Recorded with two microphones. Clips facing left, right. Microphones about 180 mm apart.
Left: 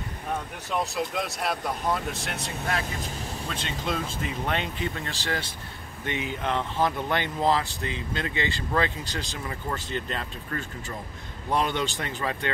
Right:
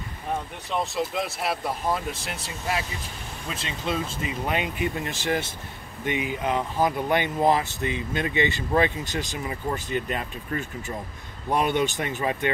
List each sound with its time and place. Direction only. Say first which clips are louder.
0.7 s speech: right 1 dB; centre (ahead or behind); by 5.5 s 20° right (ahead or behind)
6.0 s speech: right 3 dB; 10° right (ahead or behind)